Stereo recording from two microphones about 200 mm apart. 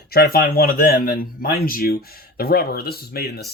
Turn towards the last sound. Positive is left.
turn(degrees=50)  # may be behind; listen again after turning